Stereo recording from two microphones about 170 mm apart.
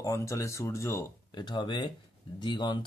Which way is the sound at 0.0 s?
20° left (ahead or behind).